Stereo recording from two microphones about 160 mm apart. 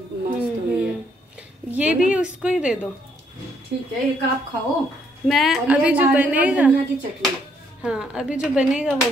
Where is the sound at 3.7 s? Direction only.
90° right.